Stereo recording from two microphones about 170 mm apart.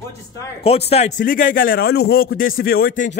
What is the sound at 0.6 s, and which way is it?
Speech, 35° left (ahead or behind).